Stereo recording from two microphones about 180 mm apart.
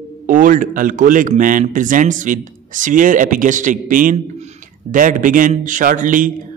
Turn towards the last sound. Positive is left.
turn(degrees=-45)  # may be behind; listen again after turning